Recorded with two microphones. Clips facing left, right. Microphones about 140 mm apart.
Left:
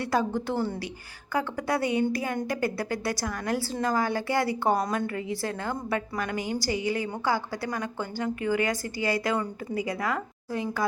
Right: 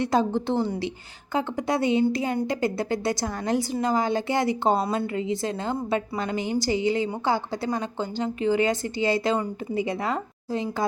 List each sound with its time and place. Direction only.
0.0 s a woman's voice: 20° right (ahead or behind)